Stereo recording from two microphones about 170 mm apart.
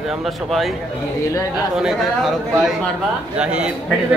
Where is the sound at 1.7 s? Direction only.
Centre (ahead or behind).